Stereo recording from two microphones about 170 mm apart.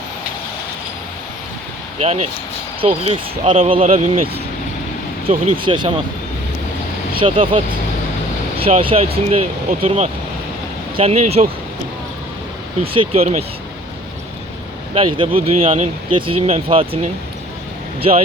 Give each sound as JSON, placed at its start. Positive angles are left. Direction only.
{"t": 2.0, "sound": "speech", "side_deg": -40}
{"t": 5.5, "sound": "speech", "side_deg": -30}
{"t": 7.2, "sound": "speech", "side_deg": -30}
{"t": 12.8, "sound": "speech", "side_deg": -35}
{"t": 14.9, "sound": "speech", "side_deg": -30}